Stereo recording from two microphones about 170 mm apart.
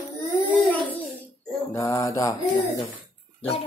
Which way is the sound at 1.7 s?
20° left (ahead or behind).